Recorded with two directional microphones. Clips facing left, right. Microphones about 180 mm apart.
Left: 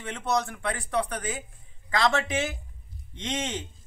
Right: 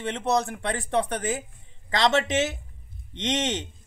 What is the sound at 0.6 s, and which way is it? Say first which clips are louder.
Speech: right 3 dB; 25° right (ahead or behind).